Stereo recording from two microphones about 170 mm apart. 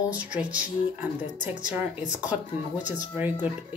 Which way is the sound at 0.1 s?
10° right (ahead or behind).